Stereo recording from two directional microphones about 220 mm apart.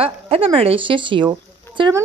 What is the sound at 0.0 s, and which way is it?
A woman's voice, 25° right (ahead or behind).